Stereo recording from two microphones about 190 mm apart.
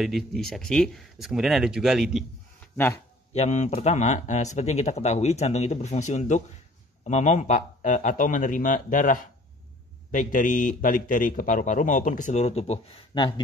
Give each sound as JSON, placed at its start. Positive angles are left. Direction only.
{"t": 0.0, "sound": "speech", "side_deg": 0}
{"t": 3.3, "sound": "a man's voice", "side_deg": 35}